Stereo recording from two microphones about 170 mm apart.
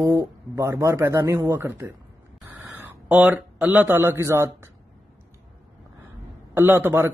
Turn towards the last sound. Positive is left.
turn(degrees=-15)  # may be behind; listen again after turning